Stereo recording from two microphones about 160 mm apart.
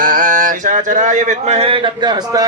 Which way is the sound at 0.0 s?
60° right (ahead or behind).